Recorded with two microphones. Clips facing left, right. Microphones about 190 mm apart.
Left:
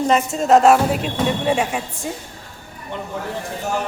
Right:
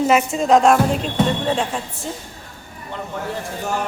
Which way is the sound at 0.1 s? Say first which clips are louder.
Left 2 dB; 5° right (ahead or behind).